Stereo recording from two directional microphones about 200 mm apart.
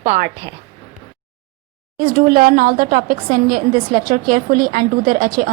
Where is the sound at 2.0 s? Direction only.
45° right (ahead or behind).